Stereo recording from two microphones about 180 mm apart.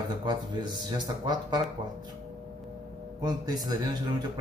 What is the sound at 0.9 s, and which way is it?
Speech, 25° right (ahead or behind).